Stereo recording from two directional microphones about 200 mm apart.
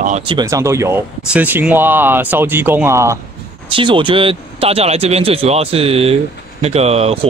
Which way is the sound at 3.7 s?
25° right (ahead or behind).